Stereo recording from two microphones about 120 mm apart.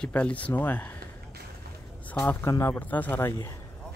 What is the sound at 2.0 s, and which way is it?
A man's voice, 15° left (ahead or behind).